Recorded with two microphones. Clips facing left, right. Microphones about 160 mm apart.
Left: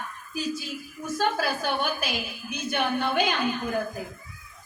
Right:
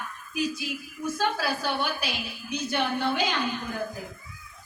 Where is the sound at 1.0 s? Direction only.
45° left (ahead or behind).